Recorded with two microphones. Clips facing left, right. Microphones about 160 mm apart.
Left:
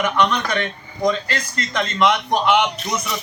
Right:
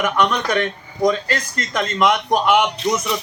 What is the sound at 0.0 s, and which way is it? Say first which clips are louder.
Speech: even; 45° right (ahead or behind).